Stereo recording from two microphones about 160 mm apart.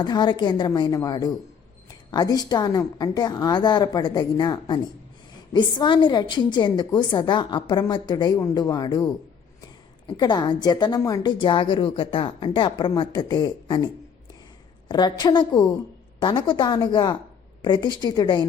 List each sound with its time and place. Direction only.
0.0 s a woman's voice: 30° left (ahead or behind)